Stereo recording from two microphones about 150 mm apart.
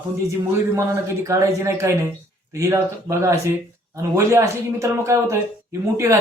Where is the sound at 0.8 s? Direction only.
20° right (ahead or behind).